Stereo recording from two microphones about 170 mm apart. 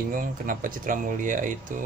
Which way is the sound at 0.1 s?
55° right (ahead or behind).